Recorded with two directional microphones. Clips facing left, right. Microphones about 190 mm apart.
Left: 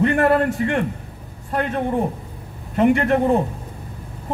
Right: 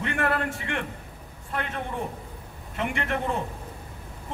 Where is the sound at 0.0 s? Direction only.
40° left (ahead or behind).